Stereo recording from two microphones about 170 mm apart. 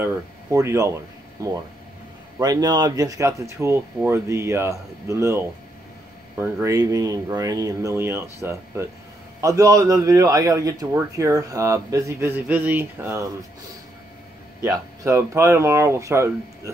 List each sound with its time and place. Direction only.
0.0 s a man's voice: 15° right (ahead or behind)
14.6 s speech: 15° right (ahead or behind)